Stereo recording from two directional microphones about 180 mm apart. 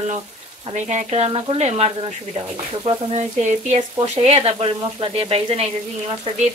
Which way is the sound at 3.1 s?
40° right (ahead or behind).